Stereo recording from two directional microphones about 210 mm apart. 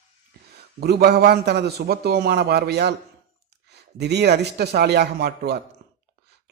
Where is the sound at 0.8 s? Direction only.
50° right (ahead or behind).